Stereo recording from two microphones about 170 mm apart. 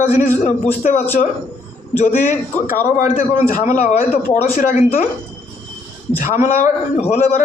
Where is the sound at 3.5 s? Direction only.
50° left (ahead or behind).